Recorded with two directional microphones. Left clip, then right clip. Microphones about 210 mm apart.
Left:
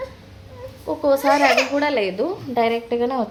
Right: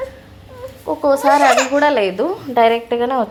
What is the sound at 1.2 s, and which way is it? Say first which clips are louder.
Speech: right 5 dB; 20° right (ahead or behind).